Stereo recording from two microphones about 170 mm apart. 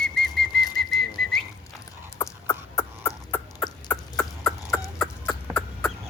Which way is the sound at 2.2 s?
15° left (ahead or behind).